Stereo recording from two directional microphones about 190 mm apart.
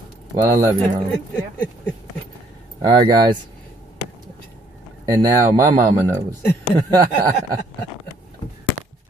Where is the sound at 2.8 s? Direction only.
20° right (ahead or behind).